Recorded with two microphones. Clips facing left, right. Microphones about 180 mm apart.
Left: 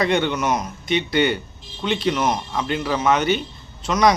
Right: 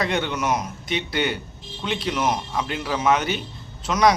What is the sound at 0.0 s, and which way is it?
Speech, centre (ahead or behind).